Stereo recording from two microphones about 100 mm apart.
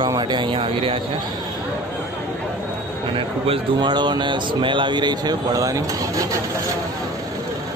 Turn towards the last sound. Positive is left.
turn(degrees=-35)  # may be behind; listen again after turning